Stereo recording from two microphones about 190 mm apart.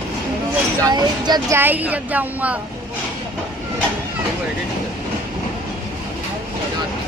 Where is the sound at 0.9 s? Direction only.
20° right (ahead or behind).